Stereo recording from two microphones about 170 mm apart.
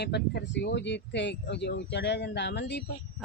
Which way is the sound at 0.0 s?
80° left.